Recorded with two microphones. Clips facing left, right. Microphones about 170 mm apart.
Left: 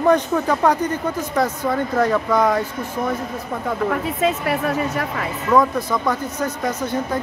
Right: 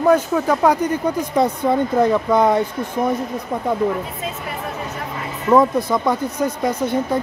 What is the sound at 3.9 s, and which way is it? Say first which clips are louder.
Speech: left 4 dB; 80° left.